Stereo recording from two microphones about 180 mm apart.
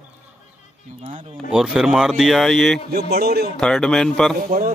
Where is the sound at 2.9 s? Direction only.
60° right (ahead or behind).